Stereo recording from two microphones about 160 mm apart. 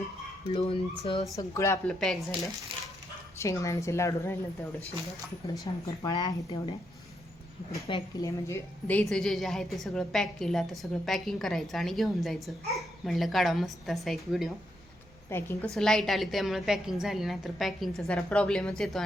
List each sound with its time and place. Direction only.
0.5 s speech: 35° left (ahead or behind)
1.2 s a woman's voice: 20° left (ahead or behind)
1.9 s a woman's voice: centre (ahead or behind)
2.7 s dog: 35° right (ahead or behind)
3.3 s a woman's voice: 20° left (ahead or behind)
5.8 s a woman's voice: 25° left (ahead or behind)
7.9 s speech: 30° left (ahead or behind)
8.2 s a woman's voice: 15° left (ahead or behind)
15.3 s a woman's voice: 15° left (ahead or behind)
15.7 s a woman's voice: 5° left (ahead or behind)